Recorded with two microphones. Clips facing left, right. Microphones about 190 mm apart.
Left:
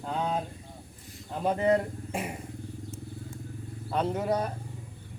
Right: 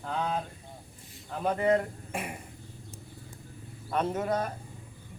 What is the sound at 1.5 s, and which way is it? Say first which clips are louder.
Speech: left 1 dB; 20° left (ahead or behind).